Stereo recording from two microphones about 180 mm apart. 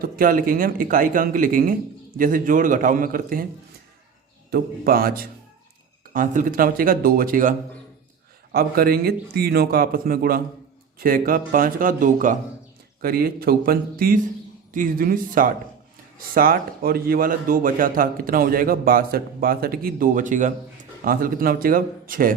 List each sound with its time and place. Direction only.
0.0 s a man's voice: 50° right (ahead or behind)
4.5 s a man's voice: 55° right (ahead or behind)
8.5 s a man's voice: 55° right (ahead or behind)